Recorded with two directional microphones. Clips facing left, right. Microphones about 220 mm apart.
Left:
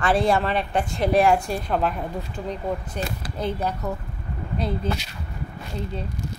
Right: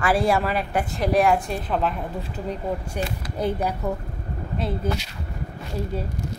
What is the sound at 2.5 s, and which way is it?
A child's voice, 10° right (ahead or behind).